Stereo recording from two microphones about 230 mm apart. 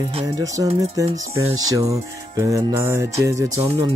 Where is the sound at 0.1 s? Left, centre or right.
Centre.